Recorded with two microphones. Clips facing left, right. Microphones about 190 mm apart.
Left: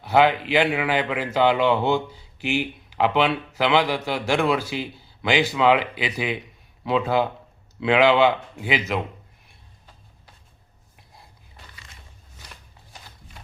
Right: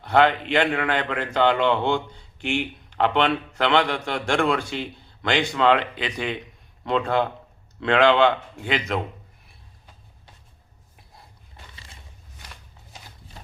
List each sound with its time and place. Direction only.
0.0 s a man's voice: 5° left (ahead or behind)
10.9 s snort: centre (ahead or behind)
12.9 s a sound: 30° right (ahead or behind)